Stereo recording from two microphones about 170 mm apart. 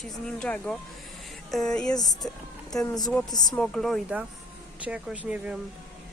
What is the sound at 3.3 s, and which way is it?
Speech, 25° left (ahead or behind).